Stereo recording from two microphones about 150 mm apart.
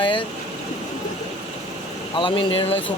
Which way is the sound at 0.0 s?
35° left (ahead or behind).